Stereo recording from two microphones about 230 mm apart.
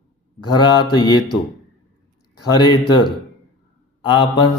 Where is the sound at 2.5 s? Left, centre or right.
Centre.